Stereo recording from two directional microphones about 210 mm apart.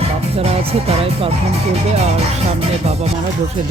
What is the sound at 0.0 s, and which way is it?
Speech, 30° right (ahead or behind).